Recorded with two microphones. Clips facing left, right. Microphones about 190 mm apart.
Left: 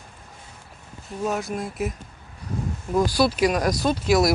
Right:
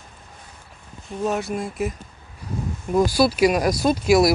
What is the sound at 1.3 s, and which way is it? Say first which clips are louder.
Speech: right 2 dB; centre (ahead or behind).